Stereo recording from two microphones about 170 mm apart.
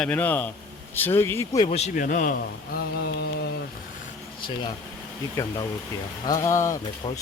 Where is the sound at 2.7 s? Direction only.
70° left (ahead or behind).